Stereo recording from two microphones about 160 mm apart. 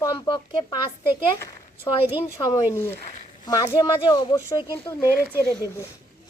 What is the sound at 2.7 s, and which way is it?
Speech, 15° left (ahead or behind).